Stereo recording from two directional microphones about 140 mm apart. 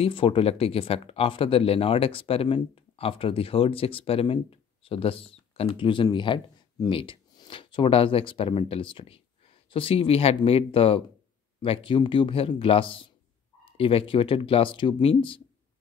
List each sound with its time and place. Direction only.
0.0 s speech: 40° left (ahead or behind)